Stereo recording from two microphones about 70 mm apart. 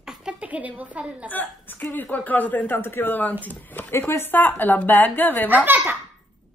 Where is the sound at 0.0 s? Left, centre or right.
Centre.